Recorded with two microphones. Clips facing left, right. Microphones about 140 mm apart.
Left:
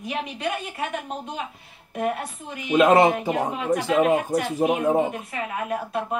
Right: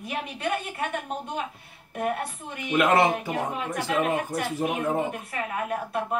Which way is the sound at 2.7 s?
20° left (ahead or behind).